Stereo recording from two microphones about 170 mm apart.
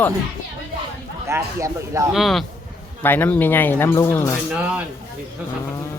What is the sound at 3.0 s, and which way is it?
Speech, 10° left (ahead or behind).